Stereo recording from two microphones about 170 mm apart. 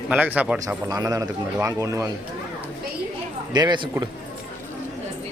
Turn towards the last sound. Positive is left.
turn(degrees=-25)  # may be behind; listen again after turning